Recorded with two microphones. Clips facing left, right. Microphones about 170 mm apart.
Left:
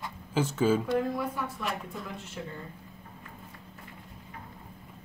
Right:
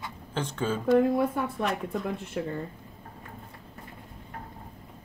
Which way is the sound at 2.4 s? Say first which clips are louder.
Right 8 dB; 55° right (ahead or behind).